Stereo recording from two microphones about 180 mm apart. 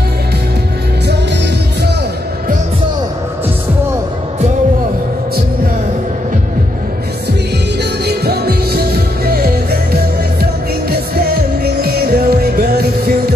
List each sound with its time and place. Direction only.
8.0 s music: 65° right (ahead or behind)
10.9 s music: 60° right (ahead or behind)